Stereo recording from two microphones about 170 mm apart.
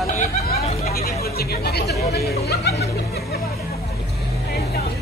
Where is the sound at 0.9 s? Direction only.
65° left (ahead or behind).